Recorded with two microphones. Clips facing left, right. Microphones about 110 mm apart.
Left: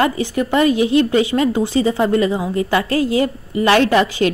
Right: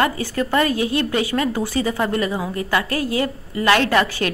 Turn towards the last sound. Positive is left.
turn(degrees=20)  # may be behind; listen again after turning